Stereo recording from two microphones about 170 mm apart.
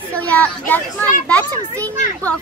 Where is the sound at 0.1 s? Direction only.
10° left (ahead or behind).